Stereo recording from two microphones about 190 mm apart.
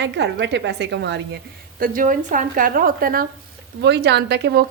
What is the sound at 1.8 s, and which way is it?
A woman's voice, 45° right (ahead or behind).